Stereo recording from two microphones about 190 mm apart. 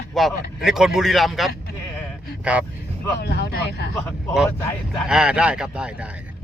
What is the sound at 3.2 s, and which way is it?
Speech, 60° left (ahead or behind).